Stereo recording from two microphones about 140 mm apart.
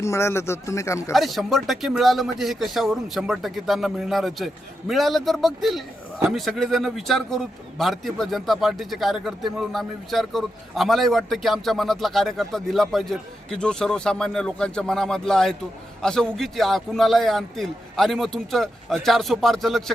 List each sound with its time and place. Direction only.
0.0 s speech: 20° left (ahead or behind)
1.1 s a man's voice: centre (ahead or behind)